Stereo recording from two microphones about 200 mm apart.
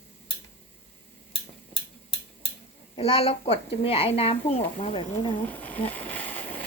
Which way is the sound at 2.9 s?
30° left (ahead or behind).